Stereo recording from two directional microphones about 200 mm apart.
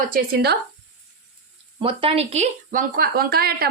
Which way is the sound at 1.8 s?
25° right (ahead or behind).